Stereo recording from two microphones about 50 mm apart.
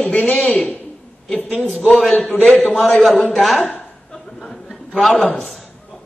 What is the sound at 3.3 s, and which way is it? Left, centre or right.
Speech, centre.